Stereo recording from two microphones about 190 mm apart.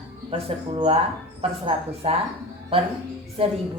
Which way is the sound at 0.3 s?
30° right (ahead or behind).